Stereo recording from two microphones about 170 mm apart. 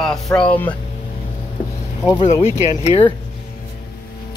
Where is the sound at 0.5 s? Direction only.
10° left (ahead or behind).